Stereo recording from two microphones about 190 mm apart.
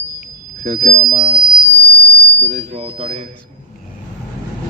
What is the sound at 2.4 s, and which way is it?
Speech, 40° right (ahead or behind).